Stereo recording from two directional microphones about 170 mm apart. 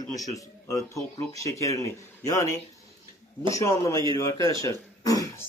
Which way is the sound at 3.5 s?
20° left (ahead or behind).